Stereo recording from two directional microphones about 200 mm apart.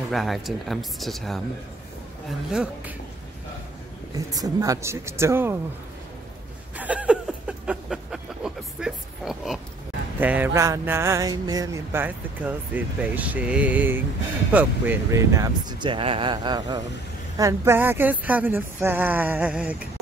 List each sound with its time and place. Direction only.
0.1 s speech: centre (ahead or behind)
2.5 s speech: 5° right (ahead or behind)
4.1 s speech: 20° right (ahead or behind)
6.8 s a sound: 5° right (ahead or behind)
10.2 s speech: 10° right (ahead or behind)